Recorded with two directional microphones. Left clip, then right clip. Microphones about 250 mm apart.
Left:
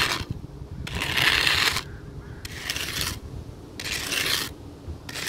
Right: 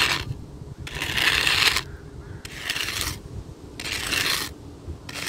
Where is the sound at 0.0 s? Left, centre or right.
Centre.